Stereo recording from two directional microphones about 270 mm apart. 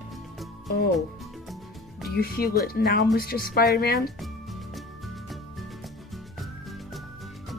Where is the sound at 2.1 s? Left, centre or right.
Left.